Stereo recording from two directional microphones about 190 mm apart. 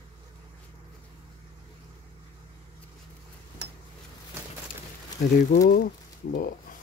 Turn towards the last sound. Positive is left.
turn(degrees=50)  # may be behind; listen again after turning